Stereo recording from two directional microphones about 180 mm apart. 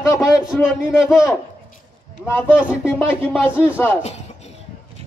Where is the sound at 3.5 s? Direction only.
5° right (ahead or behind).